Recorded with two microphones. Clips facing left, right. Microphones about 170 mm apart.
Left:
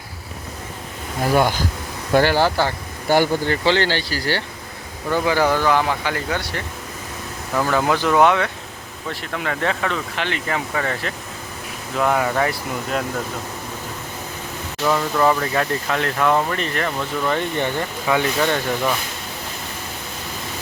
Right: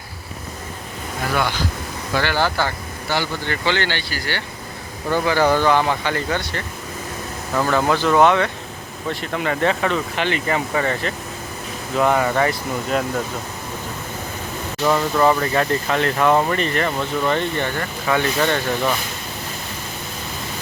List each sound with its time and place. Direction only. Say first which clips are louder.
1.2 s speech: left 4 dB; 40° left (ahead or behind)
3.1 s speech: left 7 dB; 50° left (ahead or behind)
3.5 s speech: left 3 dB; 30° left (ahead or behind)
5.2 s speech: even; 15° left (ahead or behind)
5.5 s speech: right 2 dB; 5° left (ahead or behind)
14.8 s speech: right 1 dB; 5° right (ahead or behind)
17.6 s speech: left 1 dB; 15° left (ahead or behind)